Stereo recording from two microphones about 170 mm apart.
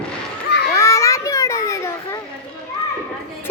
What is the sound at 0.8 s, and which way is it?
Children playing, 15° left (ahead or behind).